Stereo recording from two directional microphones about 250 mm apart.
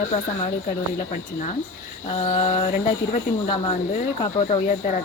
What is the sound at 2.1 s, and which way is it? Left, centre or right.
Speech, left.